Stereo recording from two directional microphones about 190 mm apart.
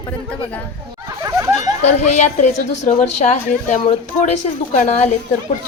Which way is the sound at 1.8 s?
35° left (ahead or behind).